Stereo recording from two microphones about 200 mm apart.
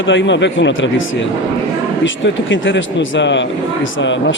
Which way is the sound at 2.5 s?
70° left (ahead or behind).